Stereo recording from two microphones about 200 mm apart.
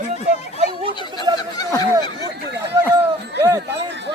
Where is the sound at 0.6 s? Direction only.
25° right (ahead or behind).